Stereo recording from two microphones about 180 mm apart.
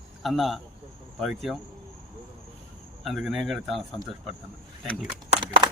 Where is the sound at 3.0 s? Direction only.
Centre (ahead or behind).